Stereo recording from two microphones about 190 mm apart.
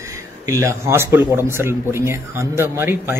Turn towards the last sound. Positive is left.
turn(degrees=-10)  # may be behind; listen again after turning